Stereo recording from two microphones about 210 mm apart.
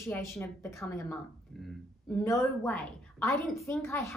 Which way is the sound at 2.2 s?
15° left (ahead or behind).